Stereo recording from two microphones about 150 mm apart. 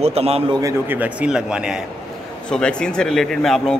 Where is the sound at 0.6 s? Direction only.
15° right (ahead or behind).